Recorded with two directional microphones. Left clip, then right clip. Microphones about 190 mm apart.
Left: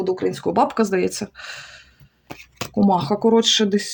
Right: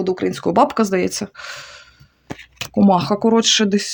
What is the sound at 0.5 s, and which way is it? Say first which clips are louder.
Speech: right 4 dB; 25° right (ahead or behind).